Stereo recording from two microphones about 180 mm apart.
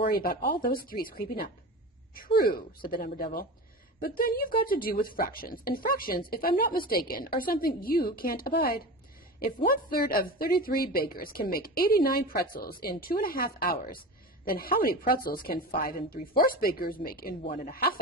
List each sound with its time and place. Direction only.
0.1 s a woman's voice: 55° left (ahead or behind)